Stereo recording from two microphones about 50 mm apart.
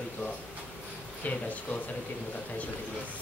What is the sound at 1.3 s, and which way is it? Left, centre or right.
Speech, left.